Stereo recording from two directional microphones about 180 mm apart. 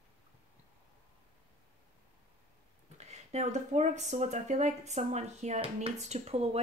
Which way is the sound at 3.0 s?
40° right (ahead or behind).